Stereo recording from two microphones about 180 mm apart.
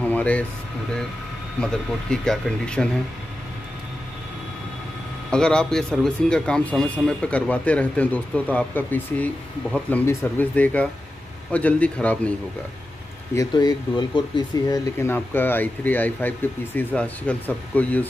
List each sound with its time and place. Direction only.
0.0 s a sound: 10° left (ahead or behind)
1.6 s speech: 5° left (ahead or behind)
5.3 s a man's voice: 5° left (ahead or behind)
13.3 s speech: 20° left (ahead or behind)
15.0 s a man's voice: 10° left (ahead or behind)